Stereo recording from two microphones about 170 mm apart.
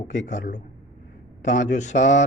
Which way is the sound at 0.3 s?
45° left (ahead or behind).